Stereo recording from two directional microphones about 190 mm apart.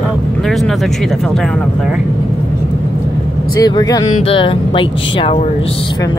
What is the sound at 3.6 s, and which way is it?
Speech, 20° left (ahead or behind).